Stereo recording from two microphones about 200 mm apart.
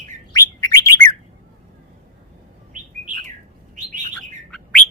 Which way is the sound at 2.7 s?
40° right (ahead or behind).